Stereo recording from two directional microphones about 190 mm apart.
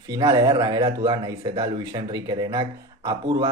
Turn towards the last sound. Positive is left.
turn(degrees=-20)  # may be behind; listen again after turning